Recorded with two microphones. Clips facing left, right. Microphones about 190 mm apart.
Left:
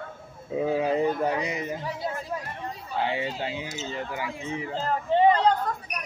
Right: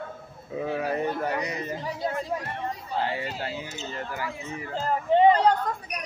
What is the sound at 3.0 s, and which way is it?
A man's voice, 20° left (ahead or behind).